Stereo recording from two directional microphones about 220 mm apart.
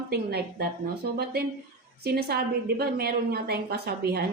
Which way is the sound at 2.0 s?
45° right (ahead or behind).